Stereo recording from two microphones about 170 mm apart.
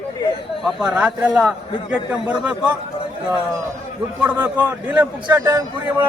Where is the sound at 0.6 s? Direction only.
5° right (ahead or behind).